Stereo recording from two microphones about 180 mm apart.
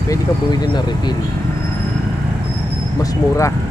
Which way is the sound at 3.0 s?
15° left (ahead or behind).